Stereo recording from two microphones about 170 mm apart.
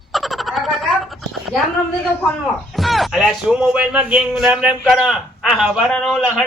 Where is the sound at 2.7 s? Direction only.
Centre (ahead or behind).